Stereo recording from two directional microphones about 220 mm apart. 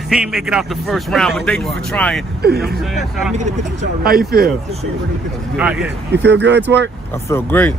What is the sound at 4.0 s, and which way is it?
Speech, 45° right (ahead or behind).